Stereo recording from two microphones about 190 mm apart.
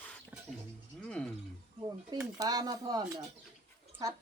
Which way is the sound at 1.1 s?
5° left (ahead or behind).